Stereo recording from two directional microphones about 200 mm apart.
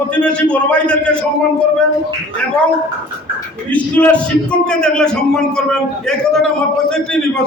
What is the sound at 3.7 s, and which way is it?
A man's voice, 5° left (ahead or behind).